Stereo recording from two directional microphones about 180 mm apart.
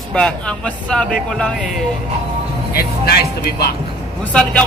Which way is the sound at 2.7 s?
60° left (ahead or behind).